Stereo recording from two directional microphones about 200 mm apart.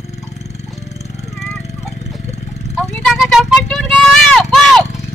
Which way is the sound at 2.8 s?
Centre (ahead or behind).